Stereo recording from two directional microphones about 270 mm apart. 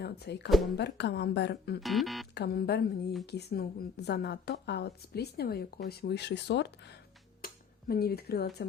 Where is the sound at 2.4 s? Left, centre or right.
Left.